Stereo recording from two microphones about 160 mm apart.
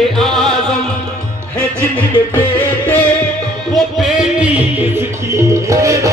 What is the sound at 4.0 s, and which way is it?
Music, 5° right (ahead or behind).